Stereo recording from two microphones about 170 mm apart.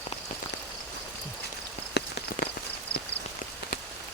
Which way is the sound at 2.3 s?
55° left (ahead or behind).